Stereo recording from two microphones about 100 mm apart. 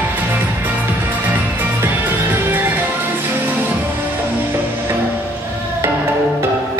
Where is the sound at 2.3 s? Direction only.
20° right (ahead or behind).